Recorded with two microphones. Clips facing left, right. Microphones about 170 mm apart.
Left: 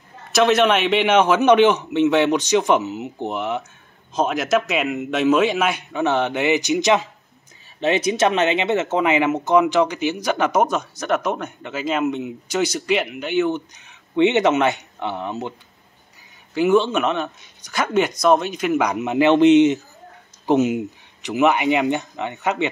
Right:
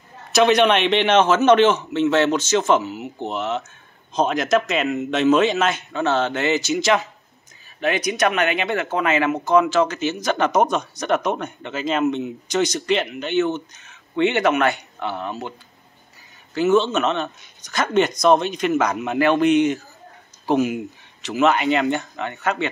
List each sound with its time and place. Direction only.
0.3 s speech: centre (ahead or behind); by 15.5 s 20° left (ahead or behind)
16.5 s speech: 10° left (ahead or behind)